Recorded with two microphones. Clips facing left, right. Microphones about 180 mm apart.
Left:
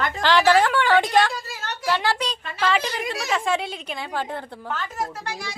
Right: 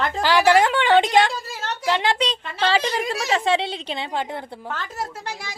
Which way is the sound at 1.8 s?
20° right (ahead or behind).